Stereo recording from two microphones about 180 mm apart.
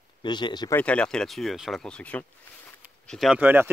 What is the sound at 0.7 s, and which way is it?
Speech, 5° left (ahead or behind).